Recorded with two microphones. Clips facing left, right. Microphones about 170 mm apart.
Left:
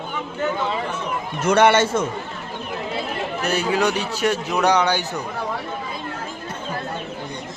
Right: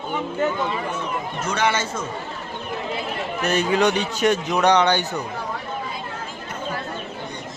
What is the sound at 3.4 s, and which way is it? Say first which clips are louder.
Speech: right 2 dB; 5° left (ahead or behind).